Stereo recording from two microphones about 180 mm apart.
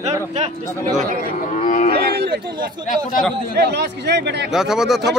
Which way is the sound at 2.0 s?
60° right (ahead or behind).